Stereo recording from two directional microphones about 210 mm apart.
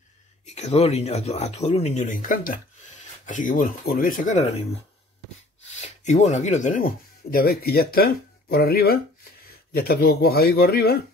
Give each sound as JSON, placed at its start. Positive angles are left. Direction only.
{"t": 0.5, "sound": "speech", "side_deg": 30}
{"t": 5.7, "sound": "speech", "side_deg": 35}